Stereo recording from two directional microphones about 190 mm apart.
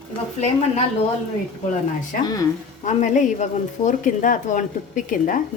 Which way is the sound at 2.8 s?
40° left (ahead or behind).